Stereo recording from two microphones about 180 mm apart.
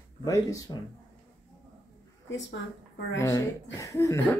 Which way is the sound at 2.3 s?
90° left.